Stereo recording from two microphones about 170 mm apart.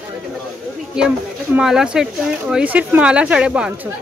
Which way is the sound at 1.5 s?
5° right (ahead or behind).